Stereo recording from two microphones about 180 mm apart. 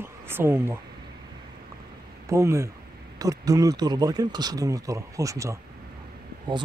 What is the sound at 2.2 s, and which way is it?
Speech, 15° right (ahead or behind).